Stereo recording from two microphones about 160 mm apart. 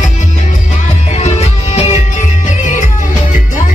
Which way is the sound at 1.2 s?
45° left (ahead or behind).